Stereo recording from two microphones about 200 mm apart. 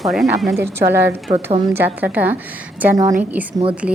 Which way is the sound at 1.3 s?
30° right (ahead or behind).